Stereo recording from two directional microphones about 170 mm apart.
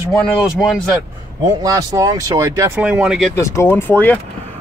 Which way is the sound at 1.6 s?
20° right (ahead or behind).